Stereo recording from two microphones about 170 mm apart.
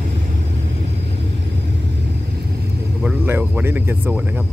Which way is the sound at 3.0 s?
10° right (ahead or behind).